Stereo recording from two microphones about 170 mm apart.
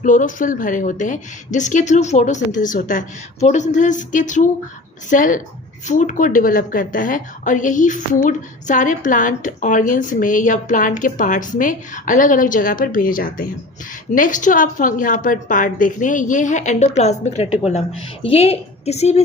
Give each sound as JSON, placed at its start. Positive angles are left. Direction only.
{"t": 0.0, "sound": "a woman's voice", "side_deg": 50}